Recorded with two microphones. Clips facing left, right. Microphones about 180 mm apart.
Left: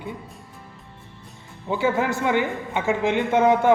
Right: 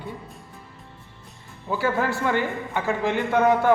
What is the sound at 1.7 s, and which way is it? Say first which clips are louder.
A man's voice: left 2 dB; 20° left (ahead or behind).